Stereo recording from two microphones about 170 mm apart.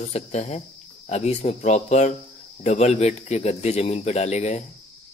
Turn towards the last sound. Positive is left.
turn(degrees=40)  # may be behind; listen again after turning